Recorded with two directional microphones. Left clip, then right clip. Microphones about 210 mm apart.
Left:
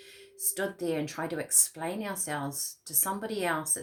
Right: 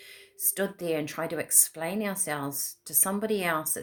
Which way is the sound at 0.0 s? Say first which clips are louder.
Right 1 dB; 45° right (ahead or behind).